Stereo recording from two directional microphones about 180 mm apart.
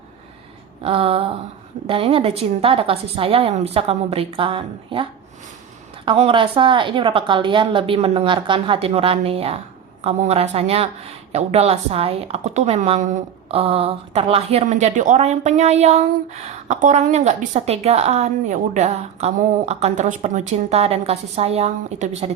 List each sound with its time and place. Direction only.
0.8 s a woman's voice: 35° right (ahead or behind)
6.1 s a woman's voice: 30° right (ahead or behind)